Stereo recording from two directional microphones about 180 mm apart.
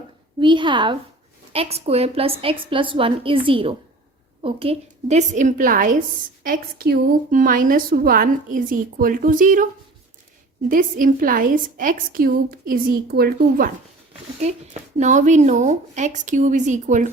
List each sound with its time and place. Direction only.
0.3 s a woman's voice: 25° right (ahead or behind); by 9.6 s 50° right (ahead or behind)
10.7 s a woman's voice: 50° right (ahead or behind)
14.4 s a woman's voice: 40° right (ahead or behind)